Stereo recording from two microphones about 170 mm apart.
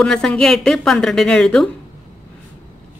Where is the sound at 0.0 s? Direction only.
5° left (ahead or behind).